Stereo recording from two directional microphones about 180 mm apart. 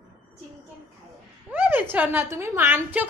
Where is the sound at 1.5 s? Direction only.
10° right (ahead or behind).